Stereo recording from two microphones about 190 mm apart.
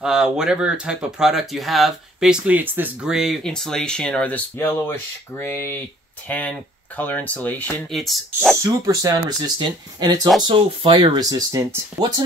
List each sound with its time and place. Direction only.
0.0 s speech: 5° right (ahead or behind)
8.8 s speech: 20° right (ahead or behind)